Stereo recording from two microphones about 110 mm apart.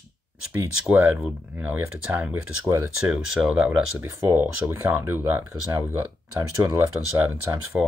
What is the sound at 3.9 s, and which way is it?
Speech, 20° right (ahead or behind).